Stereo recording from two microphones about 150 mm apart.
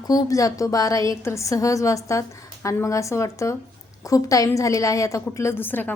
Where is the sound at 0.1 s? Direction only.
25° left (ahead or behind).